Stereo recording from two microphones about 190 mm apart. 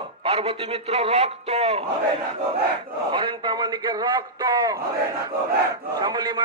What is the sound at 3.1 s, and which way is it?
A man's voice, 25° right (ahead or behind).